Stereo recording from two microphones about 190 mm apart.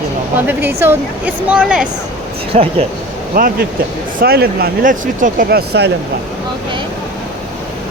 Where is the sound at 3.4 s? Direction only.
50° right (ahead or behind).